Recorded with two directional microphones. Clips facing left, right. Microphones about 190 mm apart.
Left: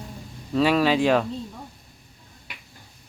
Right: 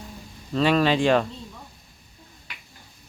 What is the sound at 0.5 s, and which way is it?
Speech, 5° left (ahead or behind).